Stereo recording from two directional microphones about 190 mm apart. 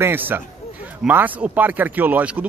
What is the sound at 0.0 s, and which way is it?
Speech, 10° right (ahead or behind).